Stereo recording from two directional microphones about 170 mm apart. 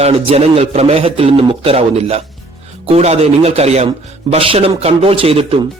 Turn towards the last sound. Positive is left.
turn(degrees=-35)  # may be behind; listen again after turning